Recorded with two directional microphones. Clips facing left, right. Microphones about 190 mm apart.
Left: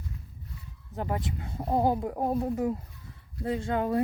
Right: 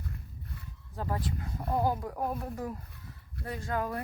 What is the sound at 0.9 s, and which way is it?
Speech, 20° left (ahead or behind).